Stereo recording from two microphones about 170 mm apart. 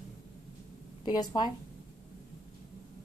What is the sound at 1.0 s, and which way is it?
Speech, 25° left (ahead or behind).